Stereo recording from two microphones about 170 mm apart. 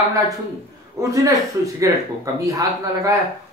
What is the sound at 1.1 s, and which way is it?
A woman's voice, 20° right (ahead or behind).